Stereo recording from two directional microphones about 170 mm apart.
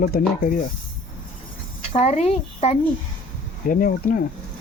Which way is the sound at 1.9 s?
40° left (ahead or behind).